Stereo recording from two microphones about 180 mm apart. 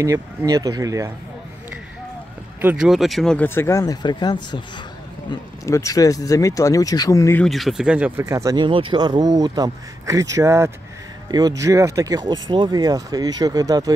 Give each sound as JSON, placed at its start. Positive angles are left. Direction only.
{"t": 0.0, "sound": "speech", "side_deg": -15}
{"t": 2.6, "sound": "speech", "side_deg": -5}
{"t": 7.4, "sound": "speech", "side_deg": 0}
{"t": 8.2, "sound": "speech", "side_deg": -15}